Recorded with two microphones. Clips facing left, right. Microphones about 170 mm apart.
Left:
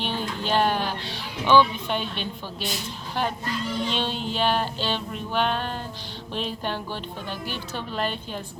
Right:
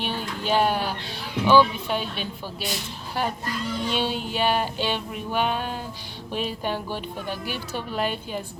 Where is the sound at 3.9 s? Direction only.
10° right (ahead or behind).